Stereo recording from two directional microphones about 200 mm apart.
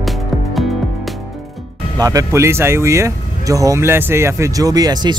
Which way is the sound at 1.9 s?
15° right (ahead or behind).